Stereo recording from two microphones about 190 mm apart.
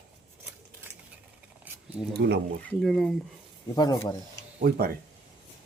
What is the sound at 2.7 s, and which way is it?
Speech, centre (ahead or behind).